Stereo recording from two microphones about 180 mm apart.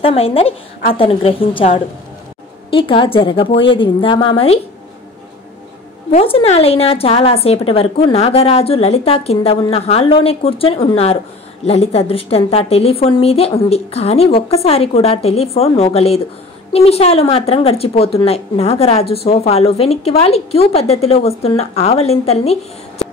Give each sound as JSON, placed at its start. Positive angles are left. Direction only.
{"t": 0.0, "sound": "speech", "side_deg": 30}
{"t": 2.7, "sound": "a woman's voice", "side_deg": 30}
{"t": 6.1, "sound": "speech", "side_deg": 35}